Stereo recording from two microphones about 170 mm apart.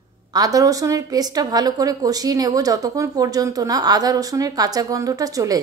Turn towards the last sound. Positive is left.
turn(degrees=-20)  # may be behind; listen again after turning